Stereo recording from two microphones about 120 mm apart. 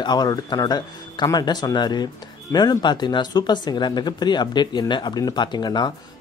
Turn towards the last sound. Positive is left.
turn(degrees=35)  # may be behind; listen again after turning